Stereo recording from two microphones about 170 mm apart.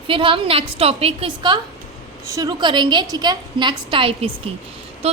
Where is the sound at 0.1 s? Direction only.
30° right (ahead or behind).